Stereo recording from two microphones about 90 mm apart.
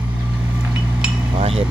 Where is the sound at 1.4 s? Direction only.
90° right.